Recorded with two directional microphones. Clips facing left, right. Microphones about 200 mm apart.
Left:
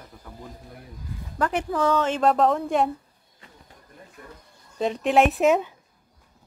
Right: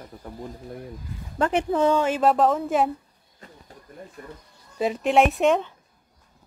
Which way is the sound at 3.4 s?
40° right (ahead or behind).